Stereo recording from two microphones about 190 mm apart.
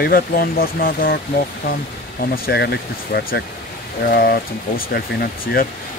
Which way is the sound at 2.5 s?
55° left (ahead or behind).